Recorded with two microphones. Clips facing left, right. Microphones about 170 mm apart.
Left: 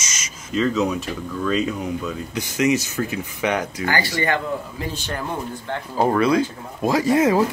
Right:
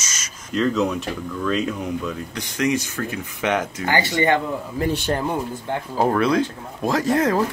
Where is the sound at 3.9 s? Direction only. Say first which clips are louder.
Right 4 dB; 20° right (ahead or behind).